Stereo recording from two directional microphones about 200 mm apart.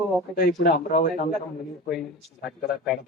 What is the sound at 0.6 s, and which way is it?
Speech, 50° left (ahead or behind).